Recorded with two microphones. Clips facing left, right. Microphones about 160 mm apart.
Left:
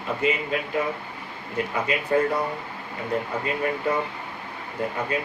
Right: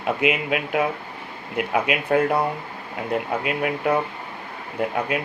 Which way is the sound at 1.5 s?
70° right (ahead or behind).